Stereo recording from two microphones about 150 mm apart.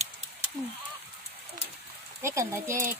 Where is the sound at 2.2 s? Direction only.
20° right (ahead or behind).